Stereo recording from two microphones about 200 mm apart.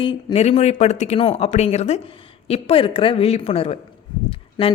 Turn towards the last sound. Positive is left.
turn(degrees=25)  # may be behind; listen again after turning